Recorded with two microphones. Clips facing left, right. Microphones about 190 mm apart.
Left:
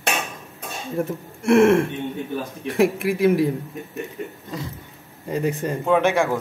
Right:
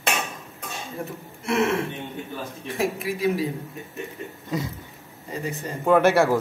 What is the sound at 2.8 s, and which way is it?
Speech, 60° left (ahead or behind).